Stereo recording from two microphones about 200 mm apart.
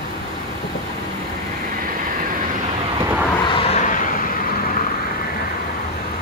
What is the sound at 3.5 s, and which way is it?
Vehicle, 30° left (ahead or behind).